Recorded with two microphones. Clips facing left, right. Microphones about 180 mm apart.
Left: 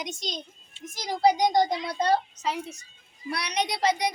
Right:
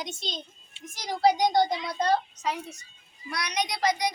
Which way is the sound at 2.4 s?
5° left (ahead or behind).